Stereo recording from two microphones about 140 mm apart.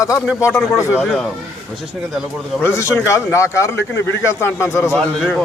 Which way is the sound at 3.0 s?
20° left (ahead or behind).